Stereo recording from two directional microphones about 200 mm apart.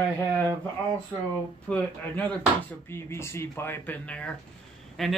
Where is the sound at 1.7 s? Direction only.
5° left (ahead or behind).